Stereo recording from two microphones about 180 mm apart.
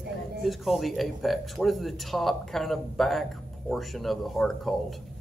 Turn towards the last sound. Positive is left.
turn(degrees=0)  # may be behind; listen again after turning